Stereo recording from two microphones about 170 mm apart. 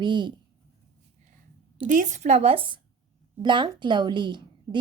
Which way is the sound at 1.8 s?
50° right (ahead or behind).